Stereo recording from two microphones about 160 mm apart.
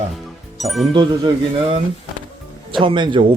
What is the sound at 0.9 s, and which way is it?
Speech, 30° right (ahead or behind).